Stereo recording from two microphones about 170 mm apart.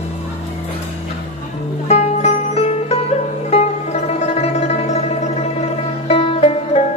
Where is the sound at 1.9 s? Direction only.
40° left (ahead or behind).